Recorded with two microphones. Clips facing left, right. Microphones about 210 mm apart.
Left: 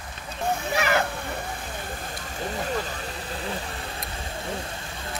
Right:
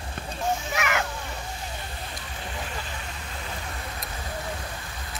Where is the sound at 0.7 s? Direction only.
35° left (ahead or behind).